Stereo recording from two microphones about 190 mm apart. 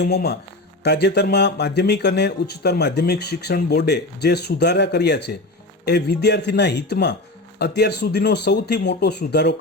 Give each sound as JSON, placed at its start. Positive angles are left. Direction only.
{"t": 0.0, "sound": "speech", "side_deg": 60}